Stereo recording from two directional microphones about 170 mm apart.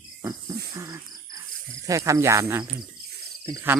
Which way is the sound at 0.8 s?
20° right (ahead or behind).